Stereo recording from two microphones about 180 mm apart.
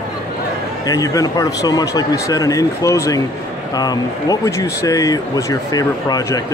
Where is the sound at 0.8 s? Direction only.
20° left (ahead or behind).